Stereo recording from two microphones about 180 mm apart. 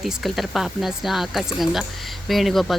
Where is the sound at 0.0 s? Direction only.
Centre (ahead or behind).